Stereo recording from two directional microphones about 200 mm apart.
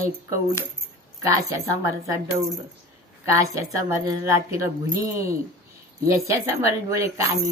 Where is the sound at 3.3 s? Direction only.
15° right (ahead or behind).